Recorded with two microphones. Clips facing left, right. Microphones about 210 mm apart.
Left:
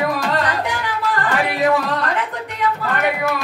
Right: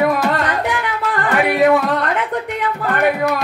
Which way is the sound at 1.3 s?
55° right (ahead or behind).